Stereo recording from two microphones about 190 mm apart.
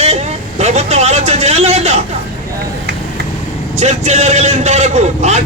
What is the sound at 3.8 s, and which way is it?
A man's voice, 35° right (ahead or behind).